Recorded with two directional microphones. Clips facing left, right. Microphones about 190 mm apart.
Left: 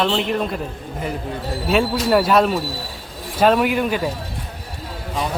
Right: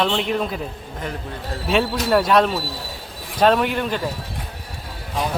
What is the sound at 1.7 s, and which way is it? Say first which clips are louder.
Speech: left 1 dB; centre (ahead or behind).